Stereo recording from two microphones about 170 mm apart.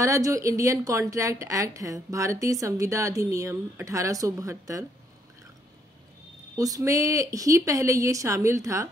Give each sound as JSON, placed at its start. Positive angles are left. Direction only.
{"t": 0.0, "sound": "a woman's voice", "side_deg": -20}
{"t": 6.5, "sound": "a woman's voice", "side_deg": -20}